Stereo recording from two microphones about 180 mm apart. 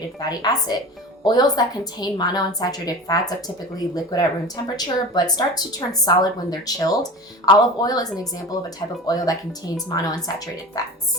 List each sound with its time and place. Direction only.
0.2 s speech: 20° left (ahead or behind)